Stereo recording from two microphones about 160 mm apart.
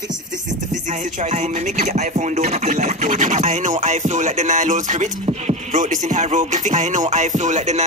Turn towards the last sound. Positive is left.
turn(degrees=-45)  # may be behind; listen again after turning